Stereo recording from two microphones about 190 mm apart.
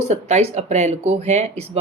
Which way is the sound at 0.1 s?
35° right (ahead or behind).